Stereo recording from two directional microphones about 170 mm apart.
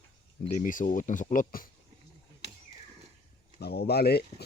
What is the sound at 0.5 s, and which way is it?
Speech, 50° left (ahead or behind).